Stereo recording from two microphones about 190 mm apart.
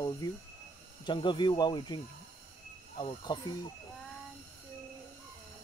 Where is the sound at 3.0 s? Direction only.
25° left (ahead or behind).